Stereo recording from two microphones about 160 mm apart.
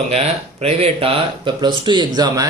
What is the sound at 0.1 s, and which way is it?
A man's voice, 40° right (ahead or behind).